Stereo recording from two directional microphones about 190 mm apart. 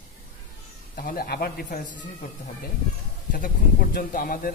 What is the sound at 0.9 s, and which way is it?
Speech, 50° left (ahead or behind).